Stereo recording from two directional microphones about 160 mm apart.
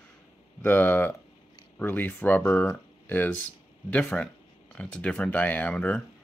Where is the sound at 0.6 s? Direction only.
10° left (ahead or behind).